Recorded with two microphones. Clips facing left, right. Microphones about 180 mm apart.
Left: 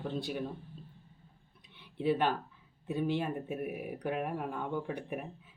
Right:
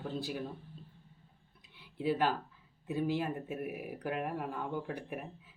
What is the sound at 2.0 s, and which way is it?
Speech, 5° right (ahead or behind).